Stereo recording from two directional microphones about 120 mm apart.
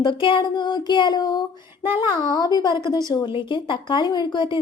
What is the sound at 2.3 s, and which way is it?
Speech, 35° left (ahead or behind).